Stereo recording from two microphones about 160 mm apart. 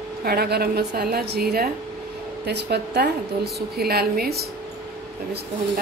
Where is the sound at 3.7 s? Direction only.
75° right (ahead or behind).